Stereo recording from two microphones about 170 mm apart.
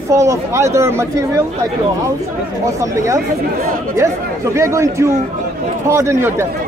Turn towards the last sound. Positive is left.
turn(degrees=-15)  # may be behind; listen again after turning